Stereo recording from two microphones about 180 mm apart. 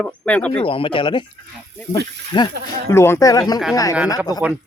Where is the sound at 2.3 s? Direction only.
25° left (ahead or behind).